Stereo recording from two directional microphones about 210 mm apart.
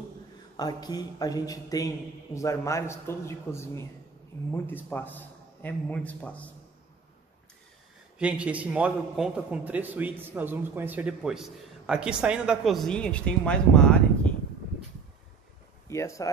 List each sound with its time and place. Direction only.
0.6 s a man's voice: 20° left (ahead or behind)
8.2 s a man's voice: 5° right (ahead or behind)
15.9 s a man's voice: 15° left (ahead or behind)